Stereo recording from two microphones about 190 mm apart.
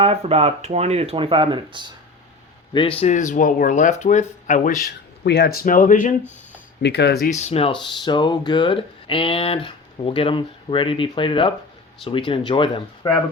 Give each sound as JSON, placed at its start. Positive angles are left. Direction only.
{"t": 0.0, "sound": "speech", "side_deg": -30}
{"t": 2.7, "sound": "speech", "side_deg": 30}
{"t": 5.2, "sound": "speech", "side_deg": 60}
{"t": 6.8, "sound": "speech", "side_deg": 60}